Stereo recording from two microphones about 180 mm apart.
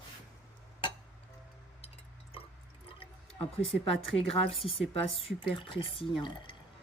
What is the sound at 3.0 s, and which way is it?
Drip, 30° left (ahead or behind).